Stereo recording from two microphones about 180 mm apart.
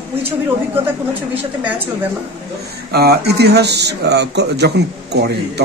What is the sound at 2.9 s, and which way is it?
A man's voice, 60° right (ahead or behind).